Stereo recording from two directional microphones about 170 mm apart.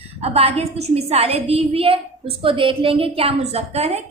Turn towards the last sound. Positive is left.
turn(degrees=-40)  # may be behind; listen again after turning